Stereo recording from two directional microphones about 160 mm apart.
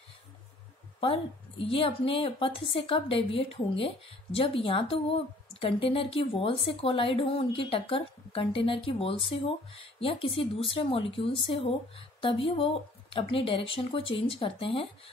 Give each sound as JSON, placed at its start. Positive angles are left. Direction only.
{"t": 1.6, "sound": "a woman's voice", "side_deg": 35}